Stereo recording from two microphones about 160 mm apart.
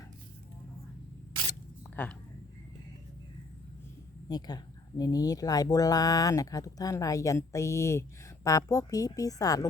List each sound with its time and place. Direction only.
2.0 s speech: 10° left (ahead or behind)
4.3 s speech: 25° left (ahead or behind)